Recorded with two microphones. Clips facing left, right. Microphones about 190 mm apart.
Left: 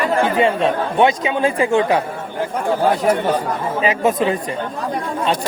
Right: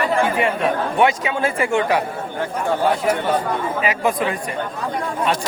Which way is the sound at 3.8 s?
25° left (ahead or behind).